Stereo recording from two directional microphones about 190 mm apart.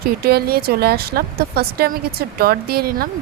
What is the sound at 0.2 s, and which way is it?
Speech, 55° right (ahead or behind).